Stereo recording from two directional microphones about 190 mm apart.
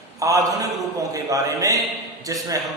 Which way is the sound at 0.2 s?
15° right (ahead or behind).